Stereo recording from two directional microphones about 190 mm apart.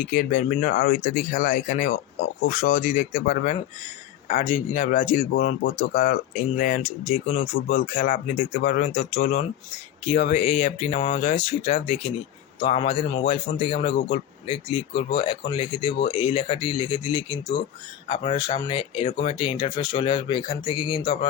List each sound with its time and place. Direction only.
0.0 s a man's voice: 45° left (ahead or behind); by 21.2 s 25° left (ahead or behind)